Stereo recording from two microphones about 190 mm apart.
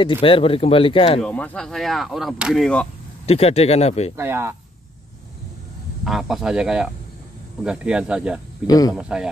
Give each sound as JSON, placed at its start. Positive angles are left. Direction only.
{"t": 0.0, "sound": "speech", "side_deg": 25}
{"t": 1.2, "sound": "speech", "side_deg": 5}
{"t": 3.3, "sound": "speech", "side_deg": 30}
{"t": 4.2, "sound": "speech", "side_deg": -15}
{"t": 6.0, "sound": "speech", "side_deg": 0}
{"t": 8.6, "sound": "speech", "side_deg": 20}
{"t": 8.9, "sound": "speech", "side_deg": -5}